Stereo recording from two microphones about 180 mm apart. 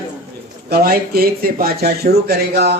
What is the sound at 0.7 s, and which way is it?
A man's voice, 55° right (ahead or behind).